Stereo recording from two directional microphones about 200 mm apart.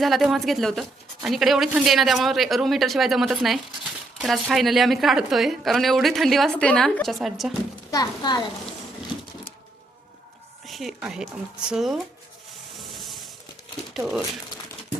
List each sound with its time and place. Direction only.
0.0 s a woman's voice: centre (ahead or behind)
7.9 s a woman's voice: 20° left (ahead or behind)
10.7 s a woman's voice: centre (ahead or behind)
13.9 s speech: centre (ahead or behind)